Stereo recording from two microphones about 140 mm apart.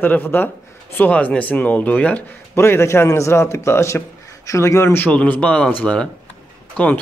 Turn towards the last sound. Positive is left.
turn(degrees=10)  # may be behind; listen again after turning